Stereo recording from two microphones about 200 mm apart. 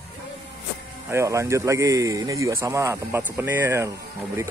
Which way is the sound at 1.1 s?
15° right (ahead or behind).